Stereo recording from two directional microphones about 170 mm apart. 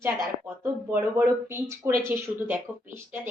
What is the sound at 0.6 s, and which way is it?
Speech, 15° right (ahead or behind).